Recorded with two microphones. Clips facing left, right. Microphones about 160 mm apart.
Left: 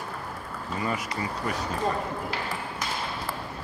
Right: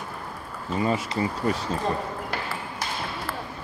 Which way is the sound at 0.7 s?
25° right (ahead or behind).